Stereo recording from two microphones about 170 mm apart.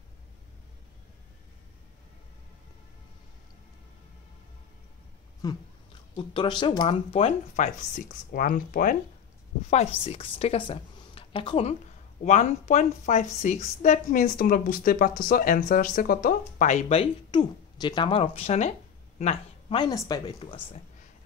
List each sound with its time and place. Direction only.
5.4 s speech: 20° left (ahead or behind); by 7.7 s 40° left (ahead or behind)
8.3 s a woman's voice: 55° left (ahead or behind)
9.7 s a woman's voice: 40° left (ahead or behind)
12.3 s a woman's voice: 45° left (ahead or behind)
17.0 s speech: 25° left (ahead or behind); by 19.3 s 40° left (ahead or behind)
19.7 s speech: 25° left (ahead or behind)
20.3 s speech: 30° left (ahead or behind)